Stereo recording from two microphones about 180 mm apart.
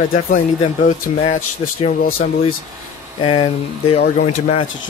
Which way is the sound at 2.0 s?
55° left (ahead or behind).